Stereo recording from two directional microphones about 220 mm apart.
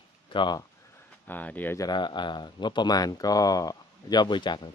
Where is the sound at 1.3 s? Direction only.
10° left (ahead or behind).